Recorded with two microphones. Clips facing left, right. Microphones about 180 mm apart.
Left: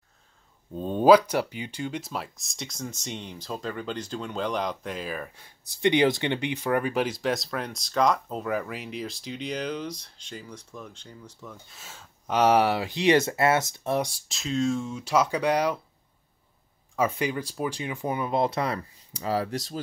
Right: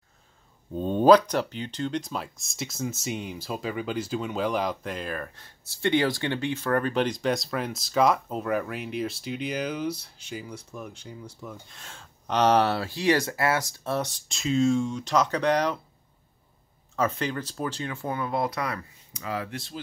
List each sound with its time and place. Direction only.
0.7 s speech: 5° left (ahead or behind)
11.6 s speech: 5° left (ahead or behind)
14.3 s speech: centre (ahead or behind)
16.9 s speech: 10° left (ahead or behind); by 19.8 s 40° left (ahead or behind)